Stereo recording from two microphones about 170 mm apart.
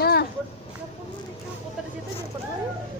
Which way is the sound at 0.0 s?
65° left (ahead or behind).